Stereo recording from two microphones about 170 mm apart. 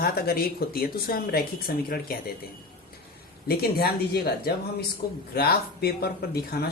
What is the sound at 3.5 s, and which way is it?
Speech, 65° left (ahead or behind).